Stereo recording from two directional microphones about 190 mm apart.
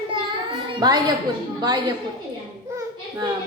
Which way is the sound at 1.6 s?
20° right (ahead or behind).